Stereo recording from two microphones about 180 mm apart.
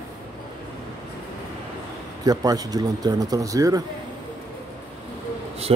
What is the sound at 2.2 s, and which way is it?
Speech, 20° right (ahead or behind).